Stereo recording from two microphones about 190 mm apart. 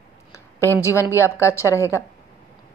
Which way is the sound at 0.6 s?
15° left (ahead or behind).